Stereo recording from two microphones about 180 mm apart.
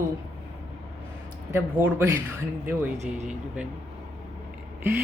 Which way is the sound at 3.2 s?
5° right (ahead or behind).